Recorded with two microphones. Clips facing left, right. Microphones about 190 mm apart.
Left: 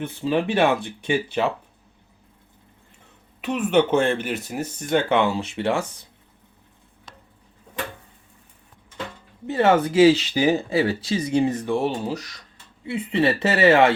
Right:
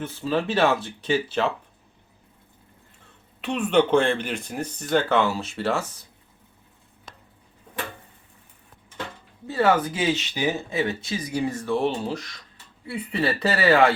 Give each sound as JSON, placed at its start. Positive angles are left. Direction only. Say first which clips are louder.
{"t": 0.0, "sound": "speech", "louder": "left 3 dB", "side_deg": 15}
{"t": 3.4, "sound": "speech", "louder": "left 1 dB", "side_deg": 5}
{"t": 9.5, "sound": "speech", "louder": "left 3 dB", "side_deg": 25}
{"t": 12.8, "sound": "speech", "louder": "left 5 dB", "side_deg": 25}